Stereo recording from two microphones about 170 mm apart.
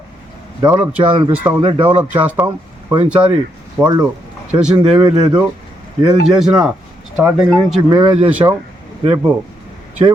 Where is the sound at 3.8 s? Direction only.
5° right (ahead or behind).